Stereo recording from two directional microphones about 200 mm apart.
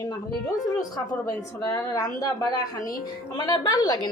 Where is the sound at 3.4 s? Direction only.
20° left (ahead or behind).